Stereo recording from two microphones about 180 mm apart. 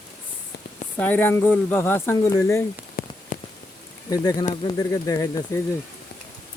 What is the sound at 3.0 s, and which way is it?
Rain on surface, 55° left (ahead or behind).